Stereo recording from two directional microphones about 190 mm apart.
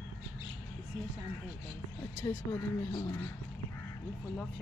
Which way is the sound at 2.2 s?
20° left (ahead or behind).